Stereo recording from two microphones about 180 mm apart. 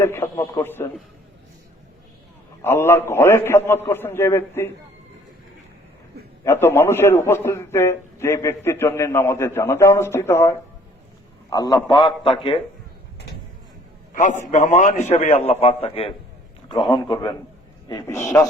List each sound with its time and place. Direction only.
0.0 s a man's voice: 15° left (ahead or behind)
2.6 s a man's voice: 15° left (ahead or behind)
6.4 s a man's voice: 15° left (ahead or behind); by 12.5 s 30° left (ahead or behind)
14.1 s a man's voice: 45° left (ahead or behind); by 18.4 s 15° left (ahead or behind)